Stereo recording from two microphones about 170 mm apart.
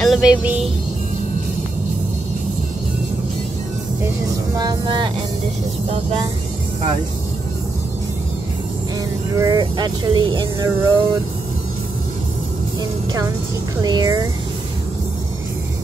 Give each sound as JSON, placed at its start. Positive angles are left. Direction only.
{"t": 0.0, "sound": "music", "side_deg": -5}
{"t": 4.6, "sound": "speech", "side_deg": -25}
{"t": 9.4, "sound": "speech", "side_deg": -25}
{"t": 13.7, "sound": "speech", "side_deg": -20}